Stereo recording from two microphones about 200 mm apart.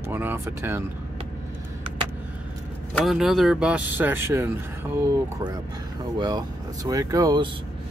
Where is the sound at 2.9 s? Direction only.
Centre (ahead or behind).